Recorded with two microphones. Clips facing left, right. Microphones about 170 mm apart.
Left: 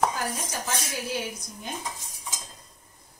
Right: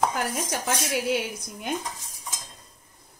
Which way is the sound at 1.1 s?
65° right (ahead or behind).